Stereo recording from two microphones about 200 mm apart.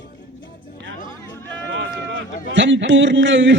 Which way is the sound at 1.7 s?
65° right (ahead or behind).